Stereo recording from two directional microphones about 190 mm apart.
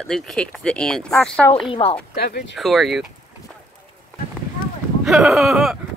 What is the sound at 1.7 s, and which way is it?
Speech, 30° left (ahead or behind).